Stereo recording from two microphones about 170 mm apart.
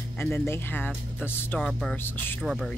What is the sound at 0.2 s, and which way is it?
Speech, 15° left (ahead or behind).